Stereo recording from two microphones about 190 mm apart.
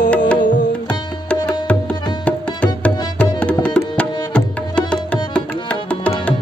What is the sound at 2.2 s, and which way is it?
Tabla, 5° left (ahead or behind).